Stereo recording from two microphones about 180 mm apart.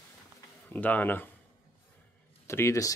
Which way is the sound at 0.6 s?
10° left (ahead or behind).